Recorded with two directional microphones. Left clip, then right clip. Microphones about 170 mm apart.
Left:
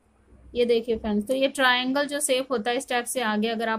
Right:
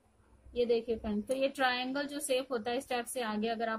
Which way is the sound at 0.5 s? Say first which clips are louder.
Left 8 dB; 45° left (ahead or behind).